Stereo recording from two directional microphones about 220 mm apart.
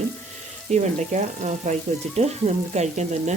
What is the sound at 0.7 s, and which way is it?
Speech, 35° right (ahead or behind).